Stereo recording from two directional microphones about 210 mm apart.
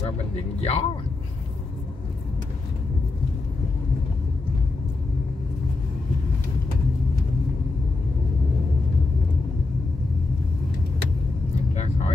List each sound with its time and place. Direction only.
0.6 s speech: 30° left (ahead or behind)